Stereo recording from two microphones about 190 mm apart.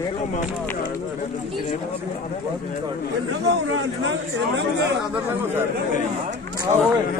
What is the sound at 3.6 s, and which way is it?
Speech, 90° right.